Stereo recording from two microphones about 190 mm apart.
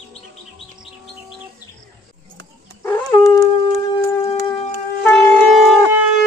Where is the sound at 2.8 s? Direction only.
15° left (ahead or behind).